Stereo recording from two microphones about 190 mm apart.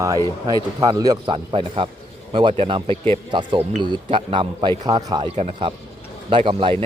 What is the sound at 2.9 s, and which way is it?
Speech, 10° left (ahead or behind).